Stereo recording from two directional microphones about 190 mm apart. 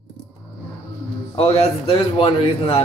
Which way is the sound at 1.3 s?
35° left (ahead or behind).